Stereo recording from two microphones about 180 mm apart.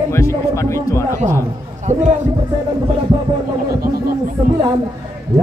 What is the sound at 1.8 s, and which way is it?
Speech, 40° right (ahead or behind).